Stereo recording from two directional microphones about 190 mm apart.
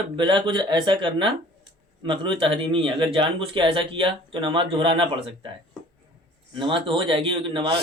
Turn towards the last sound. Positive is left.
turn(degrees=-30)  # may be behind; listen again after turning